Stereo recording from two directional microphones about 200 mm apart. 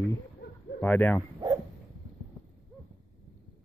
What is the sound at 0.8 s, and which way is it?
Speech, 5° left (ahead or behind).